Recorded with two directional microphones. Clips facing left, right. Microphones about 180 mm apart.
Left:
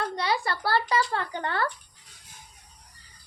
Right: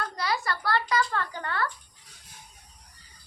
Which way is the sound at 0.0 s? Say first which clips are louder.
Left 3 dB; 25° left (ahead or behind).